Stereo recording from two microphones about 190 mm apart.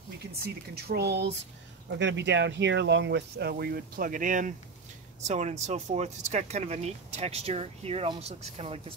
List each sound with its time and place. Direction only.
0.7 s speech: 55° right (ahead or behind); by 8.8 s 30° right (ahead or behind)